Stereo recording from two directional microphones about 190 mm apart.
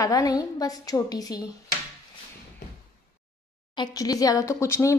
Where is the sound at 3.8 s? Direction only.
20° left (ahead or behind).